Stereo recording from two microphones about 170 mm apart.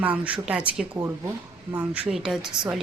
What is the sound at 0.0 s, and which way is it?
Speech, 10° right (ahead or behind).